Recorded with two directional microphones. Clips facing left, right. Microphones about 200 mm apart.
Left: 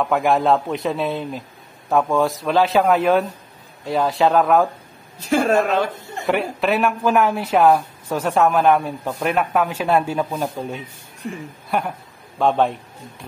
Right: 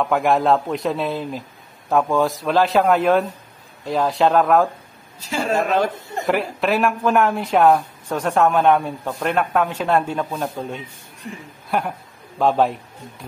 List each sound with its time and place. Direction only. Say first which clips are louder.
0.0 s a woman's voice: even; centre (ahead or behind)
5.3 s speech: left 5 dB; 55° left (ahead or behind)
6.2 s a woman's voice: left 1 dB; centre (ahead or behind)